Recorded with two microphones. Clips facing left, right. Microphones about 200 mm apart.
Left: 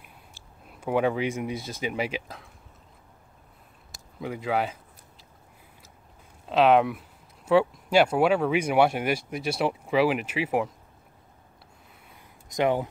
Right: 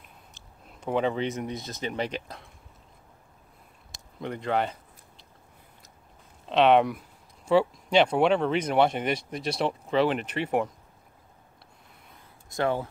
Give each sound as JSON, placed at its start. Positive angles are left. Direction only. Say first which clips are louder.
{"t": 0.0, "sound": "speech", "louder": "left 1 dB", "side_deg": 10}
{"t": 4.2, "sound": "speech", "louder": "even", "side_deg": 5}
{"t": 6.5, "sound": "speech", "louder": "even", "side_deg": 0}
{"t": 12.4, "sound": "speech", "louder": "left 3 dB", "side_deg": 15}